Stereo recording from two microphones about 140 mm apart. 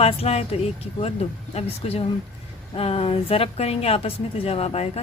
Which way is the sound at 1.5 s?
45° left (ahead or behind).